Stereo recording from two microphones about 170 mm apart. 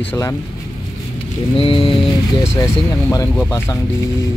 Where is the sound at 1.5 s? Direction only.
30° left (ahead or behind).